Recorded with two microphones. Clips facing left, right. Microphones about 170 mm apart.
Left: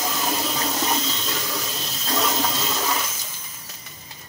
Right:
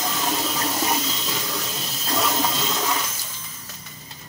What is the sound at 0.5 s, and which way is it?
Water, centre (ahead or behind).